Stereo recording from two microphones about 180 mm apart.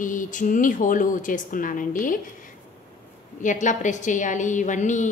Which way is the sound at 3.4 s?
45° left (ahead or behind).